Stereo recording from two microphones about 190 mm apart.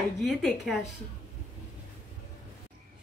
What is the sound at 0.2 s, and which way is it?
Speech, centre (ahead or behind).